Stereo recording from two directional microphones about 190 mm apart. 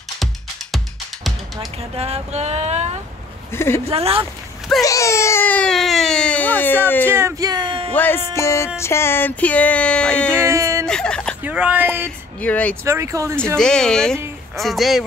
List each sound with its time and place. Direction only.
2.0 s a sound: 30° right (ahead or behind)
3.5 s speech: 15° left (ahead or behind)
3.8 s speech: 30° right (ahead or behind)
4.8 s speech: 15° left (ahead or behind)
7.1 s speech: 15° right (ahead or behind)
7.9 s speech: 10° left (ahead or behind)
10.3 s speech: 15° right (ahead or behind)
10.9 s a sound: 5° left (ahead or behind)
11.4 s speech: 10° right (ahead or behind)
12.4 s speech: 5° left (ahead or behind)
12.8 s speech: 15° right (ahead or behind)
13.6 s speech: 5° left (ahead or behind)